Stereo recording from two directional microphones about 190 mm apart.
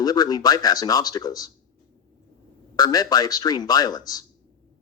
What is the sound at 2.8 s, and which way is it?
Speech, 20° left (ahead or behind).